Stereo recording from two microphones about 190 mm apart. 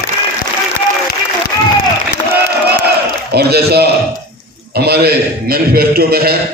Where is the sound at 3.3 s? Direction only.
55° right (ahead or behind).